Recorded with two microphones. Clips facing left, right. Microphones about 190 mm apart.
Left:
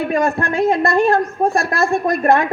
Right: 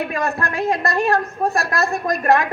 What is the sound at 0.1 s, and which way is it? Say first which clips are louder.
A woman's voice: left 5 dB; 30° left (ahead or behind).